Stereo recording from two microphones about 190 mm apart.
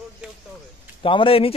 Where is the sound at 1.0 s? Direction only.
30° left (ahead or behind).